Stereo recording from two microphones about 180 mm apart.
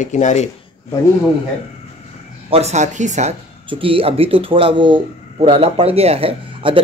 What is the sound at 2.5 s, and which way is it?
Speech, 40° right (ahead or behind).